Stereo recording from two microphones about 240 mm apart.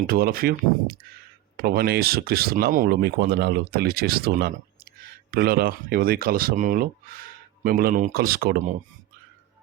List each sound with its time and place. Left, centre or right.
0.1 s speech: right